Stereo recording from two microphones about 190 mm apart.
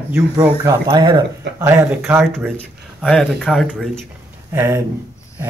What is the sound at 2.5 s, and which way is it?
Speech, 5° left (ahead or behind).